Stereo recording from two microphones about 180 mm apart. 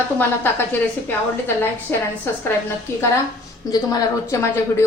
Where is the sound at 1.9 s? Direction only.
10° left (ahead or behind).